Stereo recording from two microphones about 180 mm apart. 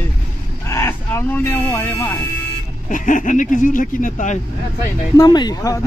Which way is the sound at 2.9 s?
45° left (ahead or behind).